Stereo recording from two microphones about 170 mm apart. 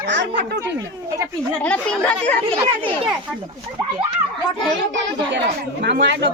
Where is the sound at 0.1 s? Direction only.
90° right.